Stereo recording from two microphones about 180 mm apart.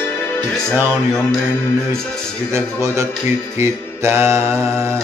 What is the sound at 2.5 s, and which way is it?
Mantra, 15° right (ahead or behind).